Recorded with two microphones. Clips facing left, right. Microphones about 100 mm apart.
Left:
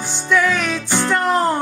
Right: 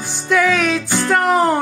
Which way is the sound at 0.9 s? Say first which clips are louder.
Right 1 dB; 10° right (ahead or behind).